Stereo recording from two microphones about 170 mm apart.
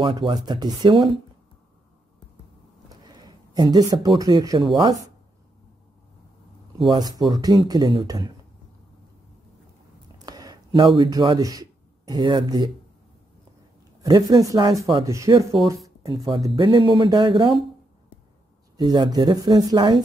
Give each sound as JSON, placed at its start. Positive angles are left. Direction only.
{"t": 0.0, "sound": "speech", "side_deg": -30}
{"t": 3.1, "sound": "a sound", "side_deg": -25}
{"t": 4.2, "sound": "speech", "side_deg": -25}
{"t": 6.8, "sound": "speech", "side_deg": -25}
{"t": 10.1, "sound": "a sound", "side_deg": -25}
{"t": 11.0, "sound": "speech", "side_deg": -25}
{"t": 14.0, "sound": "speech", "side_deg": -20}
{"t": 18.8, "sound": "speech", "side_deg": -25}